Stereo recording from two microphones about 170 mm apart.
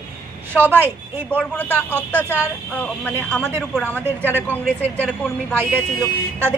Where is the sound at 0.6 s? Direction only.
10° right (ahead or behind).